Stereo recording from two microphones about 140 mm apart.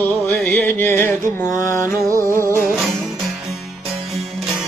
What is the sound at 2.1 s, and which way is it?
Music, 20° right (ahead or behind).